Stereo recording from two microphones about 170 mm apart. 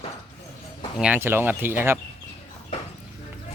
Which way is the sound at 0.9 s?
10° right (ahead or behind).